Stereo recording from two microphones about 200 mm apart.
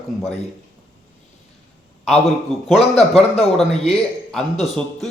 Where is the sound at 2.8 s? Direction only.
30° left (ahead or behind).